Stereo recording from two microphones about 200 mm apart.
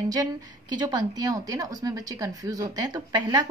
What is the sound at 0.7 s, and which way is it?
A woman's voice, 20° right (ahead or behind).